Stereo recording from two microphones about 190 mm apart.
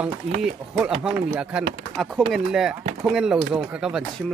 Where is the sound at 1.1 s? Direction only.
15° right (ahead or behind).